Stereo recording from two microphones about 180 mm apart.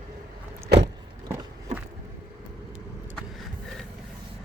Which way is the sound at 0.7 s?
65° right (ahead or behind).